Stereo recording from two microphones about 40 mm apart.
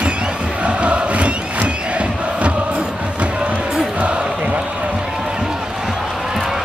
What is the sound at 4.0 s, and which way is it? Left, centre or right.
Basketball bounce, right.